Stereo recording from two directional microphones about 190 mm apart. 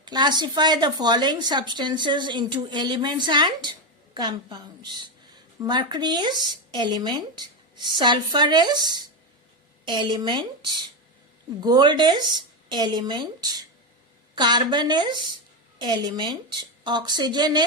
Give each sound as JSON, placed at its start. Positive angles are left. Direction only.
{"t": 0.0, "sound": "a woman's voice", "side_deg": -25}